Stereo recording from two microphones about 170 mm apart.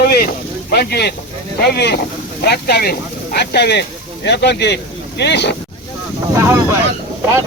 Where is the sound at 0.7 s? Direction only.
70° left (ahead or behind).